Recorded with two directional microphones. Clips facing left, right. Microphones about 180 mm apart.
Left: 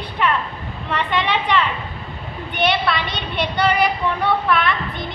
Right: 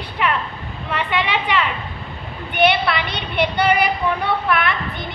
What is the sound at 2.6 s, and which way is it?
A woman's voice, 10° right (ahead or behind).